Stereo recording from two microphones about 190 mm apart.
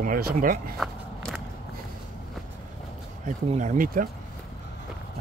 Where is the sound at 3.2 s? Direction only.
40° right (ahead or behind).